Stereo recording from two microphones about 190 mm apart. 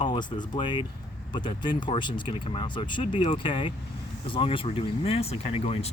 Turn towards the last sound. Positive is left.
turn(degrees=30)  # may be behind; listen again after turning